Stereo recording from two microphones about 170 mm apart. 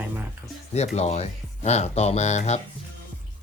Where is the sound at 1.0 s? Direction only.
40° left (ahead or behind).